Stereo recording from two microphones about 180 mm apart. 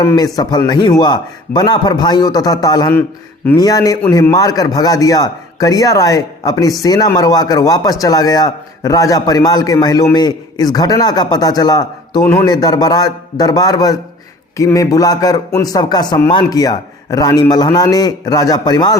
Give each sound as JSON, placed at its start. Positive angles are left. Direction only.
{"t": 0.0, "sound": "a man's voice", "side_deg": 15}